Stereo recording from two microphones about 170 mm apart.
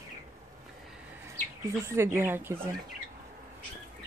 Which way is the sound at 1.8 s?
15° right (ahead or behind).